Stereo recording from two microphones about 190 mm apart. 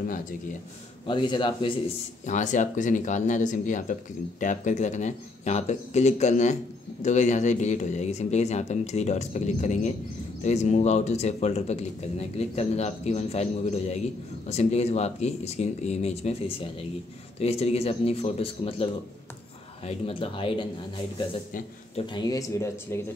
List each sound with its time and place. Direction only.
0.1 s speech: 45° left (ahead or behind)
1.0 s speech: 25° left (ahead or behind)
2.2 s speech: 40° left (ahead or behind)
22.0 s speech: 20° left (ahead or behind)